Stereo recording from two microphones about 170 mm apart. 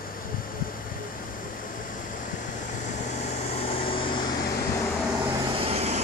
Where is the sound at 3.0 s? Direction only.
45° left (ahead or behind).